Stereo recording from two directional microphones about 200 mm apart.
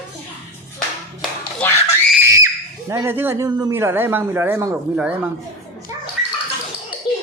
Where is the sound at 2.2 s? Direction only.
15° right (ahead or behind).